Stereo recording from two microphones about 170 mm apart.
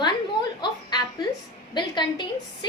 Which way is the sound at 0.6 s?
25° left (ahead or behind).